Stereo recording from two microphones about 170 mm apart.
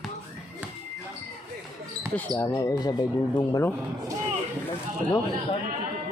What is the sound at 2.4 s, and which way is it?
Speech, 15° left (ahead or behind).